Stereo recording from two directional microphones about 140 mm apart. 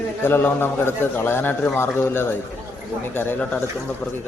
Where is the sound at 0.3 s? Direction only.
15° left (ahead or behind).